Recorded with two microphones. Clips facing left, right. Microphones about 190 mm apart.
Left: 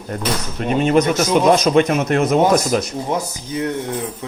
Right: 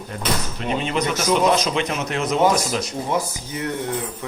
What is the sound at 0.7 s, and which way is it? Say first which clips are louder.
A man's voice: left 8 dB; 45° left (ahead or behind).